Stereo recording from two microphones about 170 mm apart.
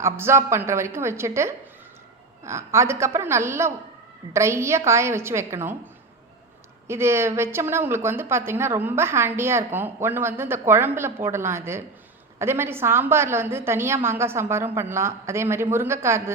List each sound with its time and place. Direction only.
0.0 s speech: 15° right (ahead or behind)
6.8 s speech: 15° right (ahead or behind)